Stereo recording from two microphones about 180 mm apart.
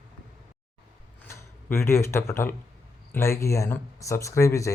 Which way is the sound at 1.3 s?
15° left (ahead or behind).